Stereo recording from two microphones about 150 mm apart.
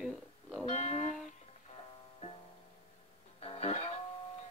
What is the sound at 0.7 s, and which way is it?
Music, 45° left (ahead or behind).